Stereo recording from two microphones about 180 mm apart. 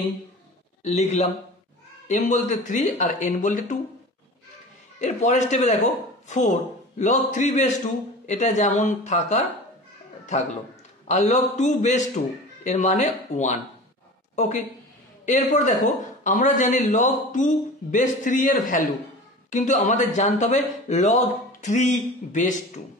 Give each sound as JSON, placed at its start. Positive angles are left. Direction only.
{"t": 0.8, "sound": "a man's voice", "side_deg": 40}
{"t": 5.0, "sound": "speech", "side_deg": 40}
{"t": 11.1, "sound": "a woman's voice", "side_deg": 40}